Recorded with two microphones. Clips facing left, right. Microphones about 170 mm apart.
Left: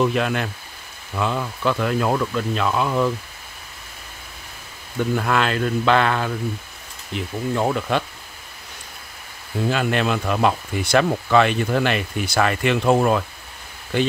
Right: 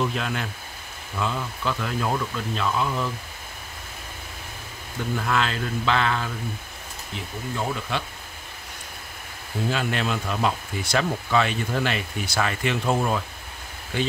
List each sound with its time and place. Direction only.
0.0 s speech: 60° left (ahead or behind)
5.0 s speech: 60° left (ahead or behind)
7.5 s speech: 65° left (ahead or behind)
9.7 s speech: 60° left (ahead or behind)